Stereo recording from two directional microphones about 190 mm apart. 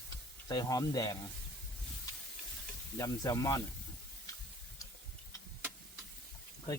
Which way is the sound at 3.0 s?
15° left (ahead or behind).